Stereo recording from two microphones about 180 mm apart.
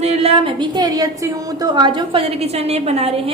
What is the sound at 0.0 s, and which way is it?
A woman's voice, 35° right (ahead or behind).